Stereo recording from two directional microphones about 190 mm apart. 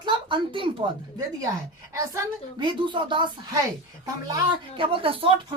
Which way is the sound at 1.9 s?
20° right (ahead or behind).